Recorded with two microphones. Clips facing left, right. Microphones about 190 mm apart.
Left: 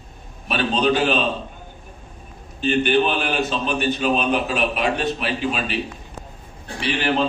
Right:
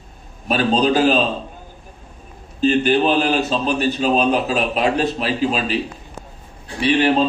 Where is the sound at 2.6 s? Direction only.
35° right (ahead or behind).